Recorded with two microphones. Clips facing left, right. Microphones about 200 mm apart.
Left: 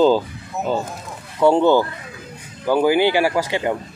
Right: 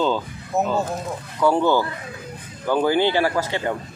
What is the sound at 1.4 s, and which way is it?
Speech, 25° left (ahead or behind).